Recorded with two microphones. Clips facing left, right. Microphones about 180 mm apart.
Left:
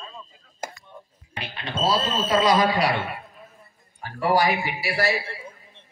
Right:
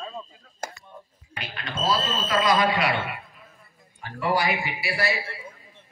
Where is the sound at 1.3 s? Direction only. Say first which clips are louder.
Left 3 dB; 30° left (ahead or behind).